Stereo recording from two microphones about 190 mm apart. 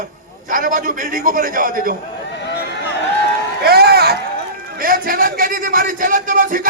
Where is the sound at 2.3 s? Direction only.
65° left (ahead or behind).